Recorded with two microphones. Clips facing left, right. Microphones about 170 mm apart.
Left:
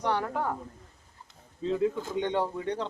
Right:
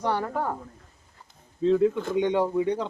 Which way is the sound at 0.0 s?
5° right (ahead or behind).